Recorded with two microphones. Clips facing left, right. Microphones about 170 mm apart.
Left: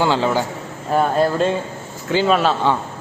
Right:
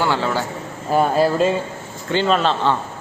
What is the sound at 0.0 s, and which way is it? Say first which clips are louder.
Speech: left 3 dB; 15° left (ahead or behind).